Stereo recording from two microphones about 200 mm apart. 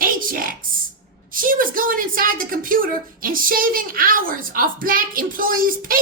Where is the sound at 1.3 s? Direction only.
45° right (ahead or behind).